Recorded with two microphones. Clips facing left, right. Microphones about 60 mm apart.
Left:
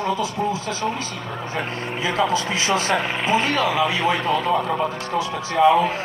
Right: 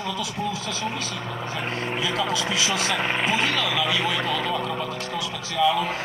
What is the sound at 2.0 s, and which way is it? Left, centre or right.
Speech, left.